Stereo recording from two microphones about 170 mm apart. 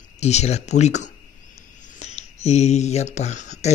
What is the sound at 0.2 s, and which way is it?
Speech, 40° left (ahead or behind).